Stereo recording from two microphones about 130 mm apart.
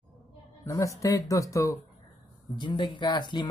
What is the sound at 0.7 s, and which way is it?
Speech, 25° left (ahead or behind).